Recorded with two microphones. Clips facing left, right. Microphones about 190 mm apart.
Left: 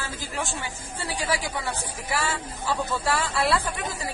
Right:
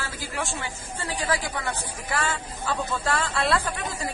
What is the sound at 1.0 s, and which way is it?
Speech, 10° left (ahead or behind).